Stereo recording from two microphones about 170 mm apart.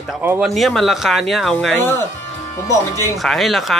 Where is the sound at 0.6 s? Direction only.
Centre (ahead or behind).